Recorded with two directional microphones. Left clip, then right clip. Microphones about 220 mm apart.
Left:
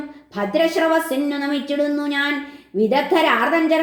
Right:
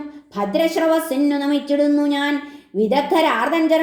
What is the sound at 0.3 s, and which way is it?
A woman's voice, 30° right (ahead or behind).